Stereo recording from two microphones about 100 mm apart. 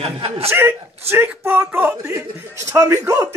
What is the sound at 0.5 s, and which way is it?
Speech, 20° right (ahead or behind).